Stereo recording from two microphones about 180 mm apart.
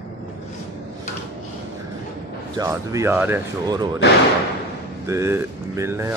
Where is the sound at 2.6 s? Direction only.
15° right (ahead or behind).